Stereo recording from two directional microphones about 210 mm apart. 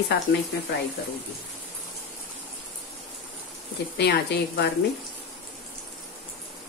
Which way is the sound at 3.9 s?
55° left (ahead or behind).